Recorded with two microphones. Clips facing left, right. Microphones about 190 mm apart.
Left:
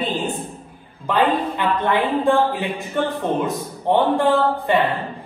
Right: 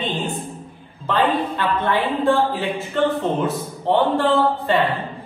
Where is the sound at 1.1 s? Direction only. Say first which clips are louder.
Left 1 dB; 15° left (ahead or behind).